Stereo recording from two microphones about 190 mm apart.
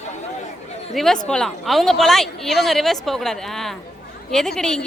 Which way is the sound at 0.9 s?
Centre (ahead or behind).